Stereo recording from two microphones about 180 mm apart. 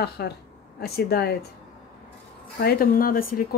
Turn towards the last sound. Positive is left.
turn(degrees=55)  # may be behind; listen again after turning